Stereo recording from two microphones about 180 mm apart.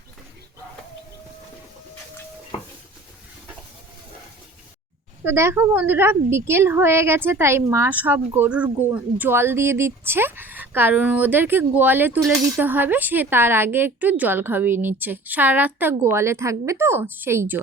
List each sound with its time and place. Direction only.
5.2 s a woman's voice: 15° right (ahead or behind)